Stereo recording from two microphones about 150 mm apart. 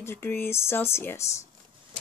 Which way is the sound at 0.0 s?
15° left (ahead or behind).